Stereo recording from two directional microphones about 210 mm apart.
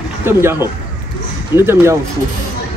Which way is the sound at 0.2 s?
10° right (ahead or behind).